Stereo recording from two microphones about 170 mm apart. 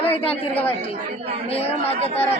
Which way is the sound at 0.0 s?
35° left (ahead or behind).